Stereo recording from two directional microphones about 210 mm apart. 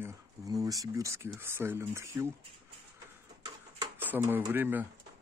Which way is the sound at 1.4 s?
10° right (ahead or behind).